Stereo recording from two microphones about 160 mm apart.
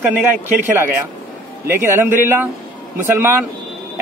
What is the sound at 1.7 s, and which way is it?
Speech, 15° right (ahead or behind).